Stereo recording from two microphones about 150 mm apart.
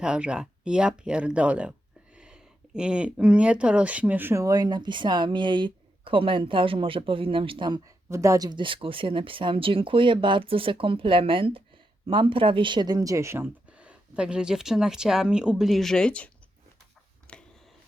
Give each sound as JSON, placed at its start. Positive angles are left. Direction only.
{"t": 0.0, "sound": "speech", "side_deg": -5}
{"t": 8.1, "sound": "speech", "side_deg": -20}
{"t": 17.3, "sound": "a sound", "side_deg": 5}